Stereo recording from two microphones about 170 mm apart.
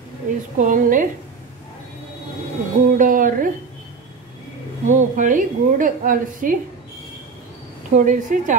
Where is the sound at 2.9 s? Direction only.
50° right (ahead or behind).